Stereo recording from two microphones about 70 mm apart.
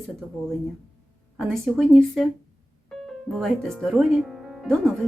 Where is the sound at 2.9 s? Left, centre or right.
Centre.